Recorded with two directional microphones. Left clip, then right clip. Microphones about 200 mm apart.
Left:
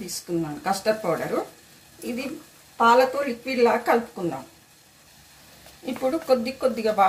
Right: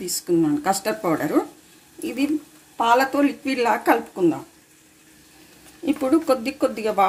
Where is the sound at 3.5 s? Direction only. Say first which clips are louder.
Left 2 dB; 55° right (ahead or behind).